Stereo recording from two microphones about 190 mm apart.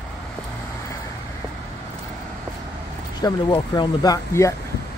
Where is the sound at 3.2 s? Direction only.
20° left (ahead or behind).